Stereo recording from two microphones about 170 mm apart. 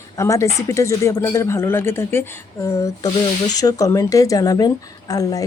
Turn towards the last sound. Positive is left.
turn(degrees=20)  # may be behind; listen again after turning